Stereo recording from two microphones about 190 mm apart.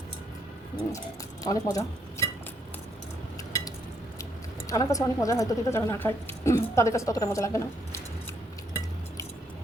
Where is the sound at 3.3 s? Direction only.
20° left (ahead or behind).